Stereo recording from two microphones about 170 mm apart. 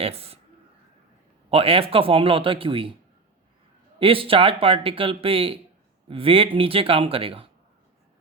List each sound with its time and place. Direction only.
0.0 s speech: 35° right (ahead or behind)
1.5 s speech: 35° right (ahead or behind)
4.0 s speech: 30° right (ahead or behind)